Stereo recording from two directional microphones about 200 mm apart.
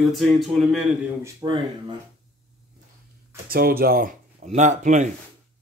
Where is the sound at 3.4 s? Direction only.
50° right (ahead or behind).